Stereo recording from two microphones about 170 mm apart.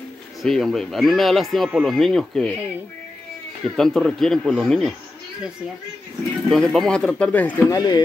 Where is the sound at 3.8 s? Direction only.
5° left (ahead or behind).